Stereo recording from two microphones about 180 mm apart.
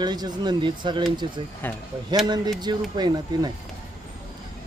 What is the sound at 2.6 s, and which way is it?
Speech, 25° right (ahead or behind).